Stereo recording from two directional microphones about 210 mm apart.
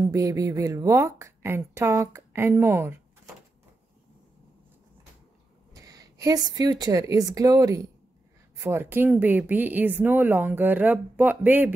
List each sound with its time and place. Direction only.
0.0 s speech: 15° right (ahead or behind)
5.7 s speech: 15° right (ahead or behind)